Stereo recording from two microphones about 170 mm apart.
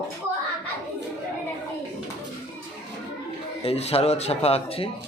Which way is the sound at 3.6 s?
35° left (ahead or behind).